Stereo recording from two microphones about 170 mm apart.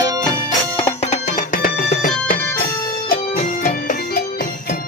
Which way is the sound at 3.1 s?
55° left (ahead or behind).